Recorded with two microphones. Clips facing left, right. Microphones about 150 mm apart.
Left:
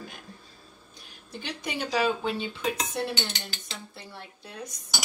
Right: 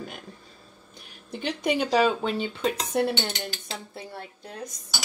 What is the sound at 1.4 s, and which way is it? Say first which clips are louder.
Speech: right 8 dB; 55° right (ahead or behind).